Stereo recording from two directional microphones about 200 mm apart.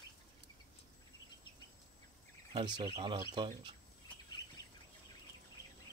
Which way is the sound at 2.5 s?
25° right (ahead or behind).